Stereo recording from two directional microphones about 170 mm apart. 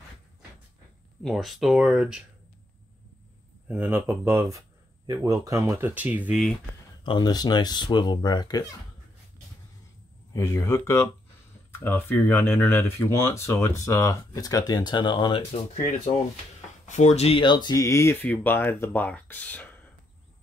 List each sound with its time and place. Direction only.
1.2 s speech: centre (ahead or behind)
3.6 s speech: 10° right (ahead or behind)
7.1 s speech: 25° left (ahead or behind)
10.3 s speech: 15° left (ahead or behind)
16.8 s speech: 45° left (ahead or behind); by 19.8 s 10° left (ahead or behind)